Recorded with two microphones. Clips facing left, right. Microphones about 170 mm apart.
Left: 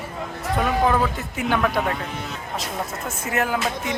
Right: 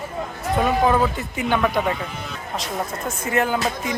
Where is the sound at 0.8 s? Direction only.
5° right (ahead or behind).